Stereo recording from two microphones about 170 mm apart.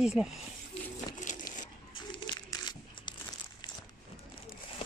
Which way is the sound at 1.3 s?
45° left (ahead or behind).